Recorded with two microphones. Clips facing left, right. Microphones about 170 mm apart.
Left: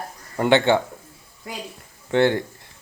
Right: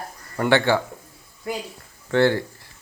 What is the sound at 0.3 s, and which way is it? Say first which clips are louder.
Speech: left 2 dB; 20° left (ahead or behind).